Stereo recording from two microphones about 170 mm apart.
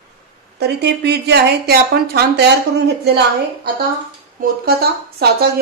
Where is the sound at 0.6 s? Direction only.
75° right (ahead or behind).